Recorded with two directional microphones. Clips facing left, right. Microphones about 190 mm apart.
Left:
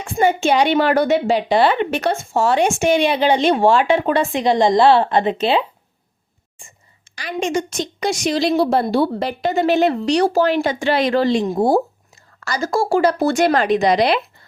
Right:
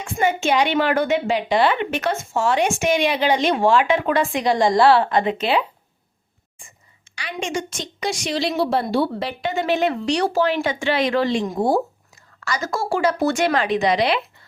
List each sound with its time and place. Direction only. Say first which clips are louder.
0.0 s a woman's voice: left 4 dB; 35° left (ahead or behind)
7.2 s a woman's voice: left 5 dB; 40° left (ahead or behind)